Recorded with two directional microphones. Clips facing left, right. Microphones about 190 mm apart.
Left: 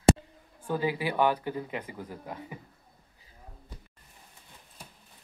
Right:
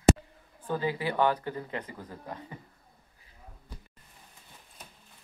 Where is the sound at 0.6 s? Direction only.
10° left (ahead or behind).